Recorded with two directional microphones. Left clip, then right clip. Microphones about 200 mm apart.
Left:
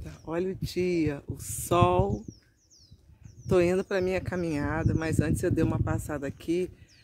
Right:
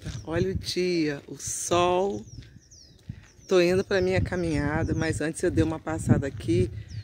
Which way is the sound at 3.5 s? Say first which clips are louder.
Right 3 dB; 10° left (ahead or behind).